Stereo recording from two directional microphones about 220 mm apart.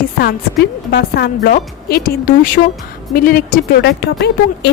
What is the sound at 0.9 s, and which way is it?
A woman's voice, 45° left (ahead or behind).